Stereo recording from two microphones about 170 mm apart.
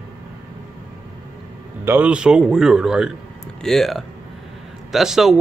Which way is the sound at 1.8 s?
10° right (ahead or behind).